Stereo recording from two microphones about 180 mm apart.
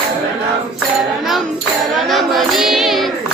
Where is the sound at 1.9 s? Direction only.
Centre (ahead or behind).